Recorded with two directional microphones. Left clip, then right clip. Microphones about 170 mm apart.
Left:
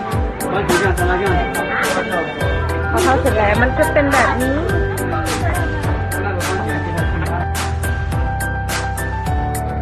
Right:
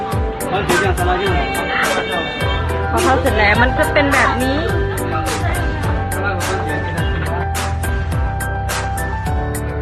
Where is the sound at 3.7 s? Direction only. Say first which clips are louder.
Even; centre (ahead or behind).